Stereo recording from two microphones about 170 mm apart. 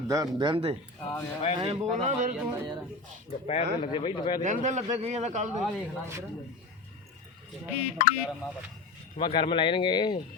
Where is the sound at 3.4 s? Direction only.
35° left (ahead or behind).